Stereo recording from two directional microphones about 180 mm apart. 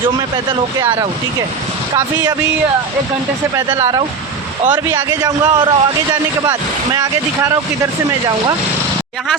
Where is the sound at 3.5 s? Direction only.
20° right (ahead or behind).